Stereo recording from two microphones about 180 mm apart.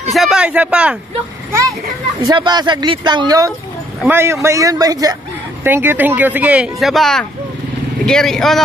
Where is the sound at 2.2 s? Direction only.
25° right (ahead or behind).